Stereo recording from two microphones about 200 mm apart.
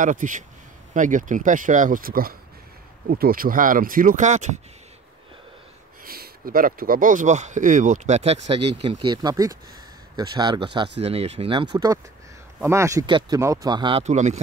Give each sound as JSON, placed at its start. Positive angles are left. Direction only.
{"t": 0.0, "sound": "speech", "side_deg": -40}
{"t": 6.0, "sound": "speech", "side_deg": -50}
{"t": 14.0, "sound": "speech", "side_deg": -35}